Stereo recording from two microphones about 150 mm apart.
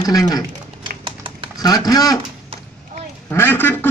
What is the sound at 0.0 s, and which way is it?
Speech, 25° left (ahead or behind).